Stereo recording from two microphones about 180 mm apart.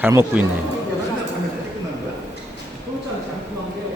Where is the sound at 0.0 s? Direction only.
10° right (ahead or behind).